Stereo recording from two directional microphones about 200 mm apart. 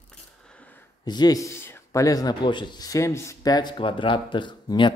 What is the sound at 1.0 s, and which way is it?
Speech, 20° left (ahead or behind).